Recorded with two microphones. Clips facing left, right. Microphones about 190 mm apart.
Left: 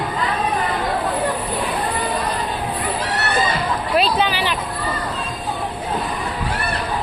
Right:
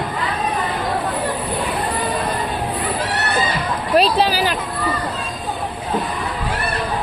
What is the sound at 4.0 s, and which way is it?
Speech, 35° right (ahead or behind).